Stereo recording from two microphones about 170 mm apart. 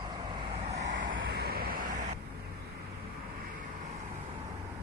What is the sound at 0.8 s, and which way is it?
Vehicle, 90° right.